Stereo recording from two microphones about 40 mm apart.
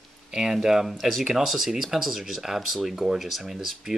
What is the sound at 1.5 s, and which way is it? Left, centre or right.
Speech, centre.